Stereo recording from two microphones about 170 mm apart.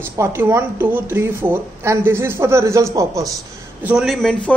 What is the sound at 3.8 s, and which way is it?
Speech, 5° right (ahead or behind).